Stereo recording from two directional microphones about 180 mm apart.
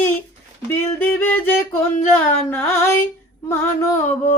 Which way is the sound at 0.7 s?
10° left (ahead or behind).